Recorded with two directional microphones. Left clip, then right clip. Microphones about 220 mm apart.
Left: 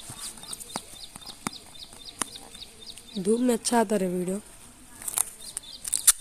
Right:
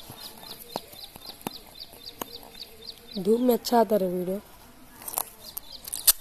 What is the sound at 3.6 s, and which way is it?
Speech, 40° left (ahead or behind).